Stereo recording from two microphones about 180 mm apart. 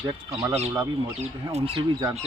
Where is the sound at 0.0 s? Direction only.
15° right (ahead or behind).